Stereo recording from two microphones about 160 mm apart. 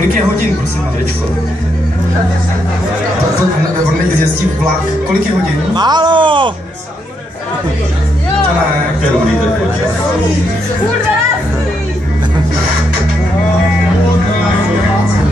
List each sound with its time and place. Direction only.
5.8 s speech: 25° right (ahead or behind)